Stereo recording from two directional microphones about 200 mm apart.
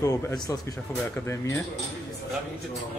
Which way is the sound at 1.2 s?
10° left (ahead or behind).